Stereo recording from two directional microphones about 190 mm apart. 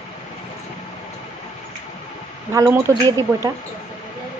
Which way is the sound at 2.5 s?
15° right (ahead or behind).